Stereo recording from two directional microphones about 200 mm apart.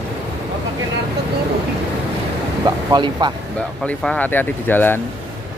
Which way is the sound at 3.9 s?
10° left (ahead or behind).